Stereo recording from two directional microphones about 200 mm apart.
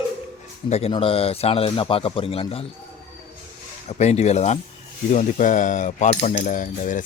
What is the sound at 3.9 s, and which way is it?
Cutlery, 35° left (ahead or behind).